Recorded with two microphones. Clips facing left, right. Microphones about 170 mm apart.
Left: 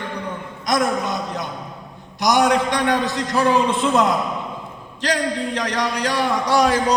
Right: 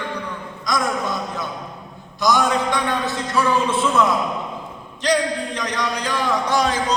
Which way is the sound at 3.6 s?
15° left (ahead or behind).